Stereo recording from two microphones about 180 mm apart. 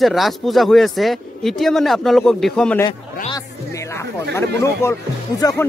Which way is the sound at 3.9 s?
15° left (ahead or behind).